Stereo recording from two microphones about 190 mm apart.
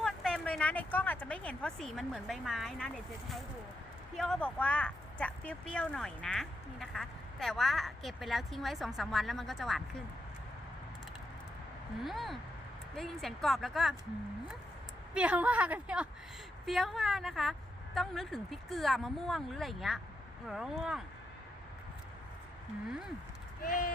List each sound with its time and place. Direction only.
0.0 s speech: centre (ahead or behind)
12.0 s speech: centre (ahead or behind)
15.1 s a woman's voice: 5° right (ahead or behind)
23.6 s speech: 50° left (ahead or behind)